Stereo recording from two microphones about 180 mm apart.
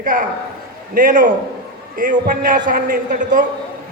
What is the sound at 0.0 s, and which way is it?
A man's voice, 50° right (ahead or behind).